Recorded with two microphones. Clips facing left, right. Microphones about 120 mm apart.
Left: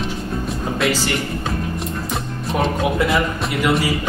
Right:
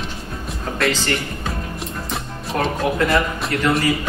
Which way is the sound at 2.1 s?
Centre (ahead or behind).